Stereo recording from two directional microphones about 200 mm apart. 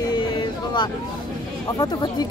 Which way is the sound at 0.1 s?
25° left (ahead or behind).